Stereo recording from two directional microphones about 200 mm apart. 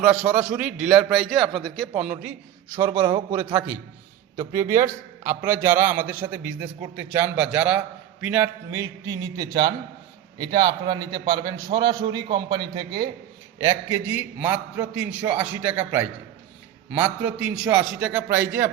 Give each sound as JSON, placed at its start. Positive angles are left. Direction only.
{"t": 0.0, "sound": "a man's voice", "side_deg": -5}
{"t": 3.0, "sound": "a man's voice", "side_deg": -25}
{"t": 4.8, "sound": "a man's voice", "side_deg": -10}